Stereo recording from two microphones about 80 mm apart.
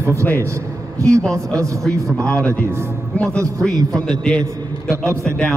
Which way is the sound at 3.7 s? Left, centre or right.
Right.